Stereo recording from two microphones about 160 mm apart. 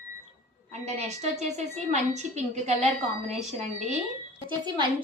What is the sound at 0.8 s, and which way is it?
A woman's voice, 45° right (ahead or behind).